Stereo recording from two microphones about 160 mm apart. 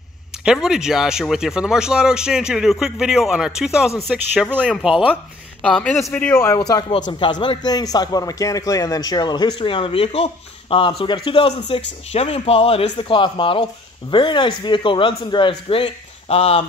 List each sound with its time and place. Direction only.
0.5 s speech: 5° right (ahead or behind)
4.6 s a man's voice: centre (ahead or behind); by 6.6 s 15° left (ahead or behind)
6.7 s a man's voice: 25° left (ahead or behind)